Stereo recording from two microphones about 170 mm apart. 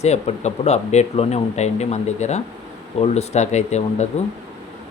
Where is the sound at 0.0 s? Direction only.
40° left (ahead or behind).